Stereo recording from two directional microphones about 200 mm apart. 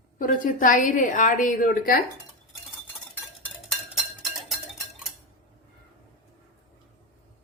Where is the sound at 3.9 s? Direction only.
Centre (ahead or behind).